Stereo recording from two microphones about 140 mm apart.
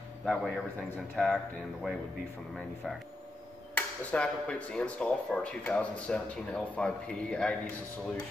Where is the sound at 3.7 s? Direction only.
10° left (ahead or behind).